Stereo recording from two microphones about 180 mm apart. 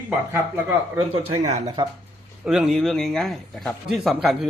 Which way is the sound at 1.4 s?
40° right (ahead or behind).